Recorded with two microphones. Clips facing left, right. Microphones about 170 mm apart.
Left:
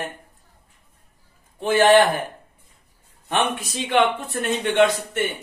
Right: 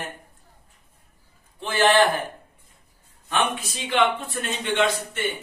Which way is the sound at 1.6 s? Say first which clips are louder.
Left 4 dB; 50° left (ahead or behind).